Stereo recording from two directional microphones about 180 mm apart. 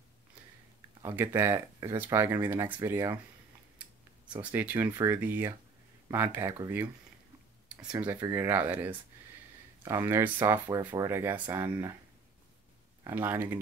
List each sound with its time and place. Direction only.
1.0 s speech: 15° right (ahead or behind)
4.4 s speech: 10° right (ahead or behind)
11.4 s speech: 25° right (ahead or behind)
13.0 s speech: 10° right (ahead or behind)